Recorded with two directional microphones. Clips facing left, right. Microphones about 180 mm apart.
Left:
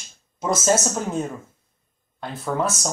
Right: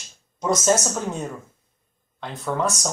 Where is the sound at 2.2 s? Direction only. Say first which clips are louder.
Even; 10° left (ahead or behind).